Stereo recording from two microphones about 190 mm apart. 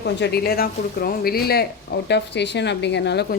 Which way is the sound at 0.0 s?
60° left (ahead or behind).